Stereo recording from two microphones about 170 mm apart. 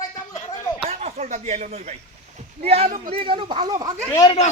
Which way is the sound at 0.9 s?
35° right (ahead or behind).